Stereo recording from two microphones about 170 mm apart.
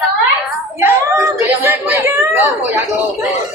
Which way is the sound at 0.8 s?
15° right (ahead or behind).